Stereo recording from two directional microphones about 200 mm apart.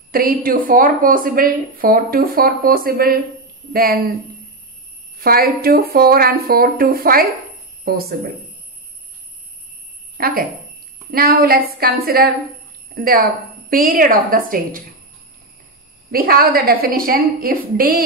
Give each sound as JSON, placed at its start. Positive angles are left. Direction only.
{"t": 0.1, "sound": "speech", "side_deg": -45}
{"t": 5.2, "sound": "speech", "side_deg": -50}
{"t": 10.1, "sound": "speech", "side_deg": -45}
{"t": 16.1, "sound": "speech", "side_deg": -45}